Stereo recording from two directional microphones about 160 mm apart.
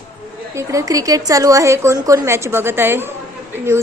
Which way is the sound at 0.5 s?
20° right (ahead or behind).